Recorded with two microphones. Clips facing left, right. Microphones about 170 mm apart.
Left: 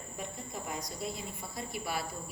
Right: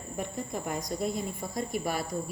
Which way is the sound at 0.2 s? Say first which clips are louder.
Right 7 dB; 55° right (ahead or behind).